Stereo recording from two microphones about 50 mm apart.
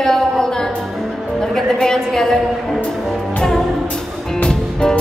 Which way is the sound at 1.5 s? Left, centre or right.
Centre.